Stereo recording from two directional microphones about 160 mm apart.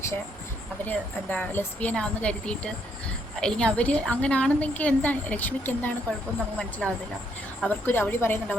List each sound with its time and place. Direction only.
0.9 s a woman's voice: 10° left (ahead or behind)